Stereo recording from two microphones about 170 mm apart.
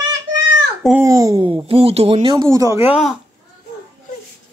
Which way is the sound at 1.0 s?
20° right (ahead or behind).